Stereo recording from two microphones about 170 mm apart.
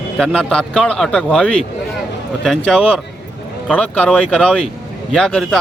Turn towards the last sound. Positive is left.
turn(degrees=5)  # may be behind; listen again after turning